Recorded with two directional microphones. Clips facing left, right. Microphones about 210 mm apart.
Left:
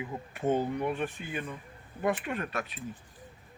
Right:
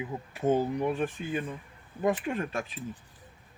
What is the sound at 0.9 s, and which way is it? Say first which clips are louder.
Speech: right 3 dB; 35° right (ahead or behind).